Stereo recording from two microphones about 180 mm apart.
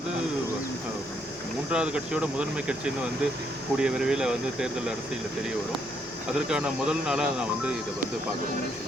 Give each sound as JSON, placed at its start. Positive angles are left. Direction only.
{"t": 1.7, "sound": "speech", "side_deg": -5}
{"t": 6.5, "sound": "speech", "side_deg": -5}